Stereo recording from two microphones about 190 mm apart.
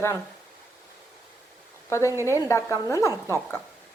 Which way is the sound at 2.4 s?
15° left (ahead or behind).